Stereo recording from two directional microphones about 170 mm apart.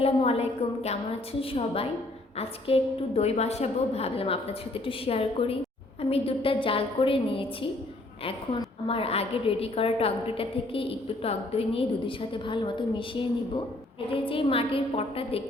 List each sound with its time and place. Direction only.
0.0 s a woman's voice: 35° left (ahead or behind)
8.9 s a woman's voice: 35° left (ahead or behind)